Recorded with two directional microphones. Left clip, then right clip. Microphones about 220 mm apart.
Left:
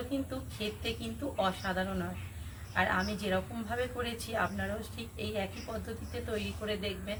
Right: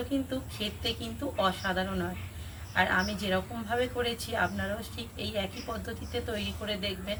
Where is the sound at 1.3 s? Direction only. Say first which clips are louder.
Right 3 dB; centre (ahead or behind).